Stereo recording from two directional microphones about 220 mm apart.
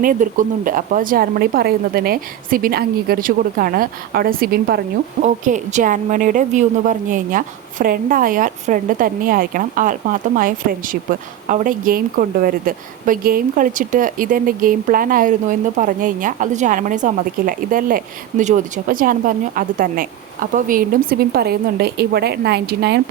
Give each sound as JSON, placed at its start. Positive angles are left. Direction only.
{"t": 0.0, "sound": "speech", "side_deg": -35}
{"t": 5.2, "sound": "speech", "side_deg": -35}